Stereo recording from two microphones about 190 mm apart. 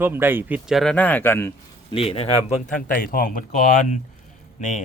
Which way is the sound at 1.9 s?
30° left (ahead or behind).